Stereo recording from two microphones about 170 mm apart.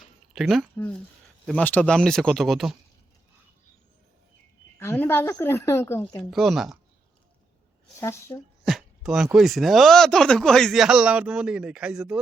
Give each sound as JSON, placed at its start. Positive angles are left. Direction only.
{"t": 0.3, "sound": "speech", "side_deg": 0}
{"t": 4.8, "sound": "a woman's voice", "side_deg": 15}
{"t": 6.3, "sound": "speech", "side_deg": 0}
{"t": 8.0, "sound": "a woman's voice", "side_deg": 15}
{"t": 8.6, "sound": "speech", "side_deg": 0}